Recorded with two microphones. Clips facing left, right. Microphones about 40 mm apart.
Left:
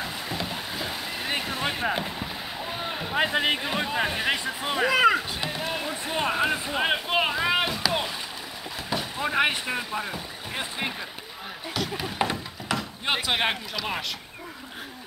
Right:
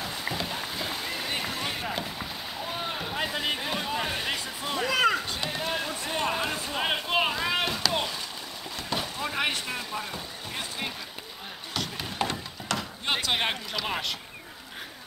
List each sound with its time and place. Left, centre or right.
0.0 s rowboat: centre
1.5 s a sound: left
2.1 s boat: centre
3.2 s speech: left; by 6.1 s centre
6.1 s a sound: centre
9.2 s speech: centre
10.5 s a sound: centre
12.2 s chop: centre
13.7 s speech: centre